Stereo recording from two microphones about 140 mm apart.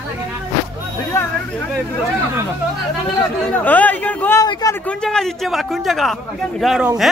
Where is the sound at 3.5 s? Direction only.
10° left (ahead or behind).